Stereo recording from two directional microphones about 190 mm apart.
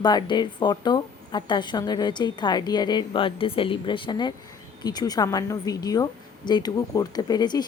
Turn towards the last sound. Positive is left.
turn(degrees=20)  # may be behind; listen again after turning